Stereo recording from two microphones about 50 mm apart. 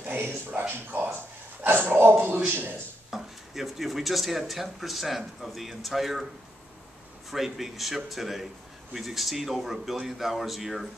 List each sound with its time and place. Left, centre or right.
0.5 s speech: right
1.7 s dog: right
2.1 s a sound: right
3.1 s speech: centre
7.2 s speech: centre